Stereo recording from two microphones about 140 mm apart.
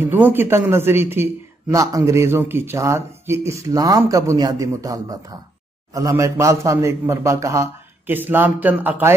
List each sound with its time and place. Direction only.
0.0 s speech: 15° right (ahead or behind)